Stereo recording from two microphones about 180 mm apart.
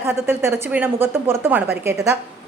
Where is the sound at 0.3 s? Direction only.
10° right (ahead or behind).